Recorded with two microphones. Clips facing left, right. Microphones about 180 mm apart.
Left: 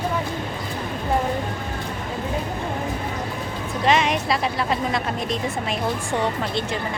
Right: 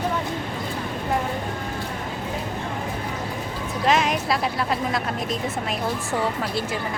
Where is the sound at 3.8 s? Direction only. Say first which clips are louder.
Left 1 dB; centre (ahead or behind).